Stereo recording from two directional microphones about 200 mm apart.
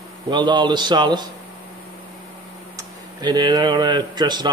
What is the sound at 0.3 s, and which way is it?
Speech, 20° right (ahead or behind).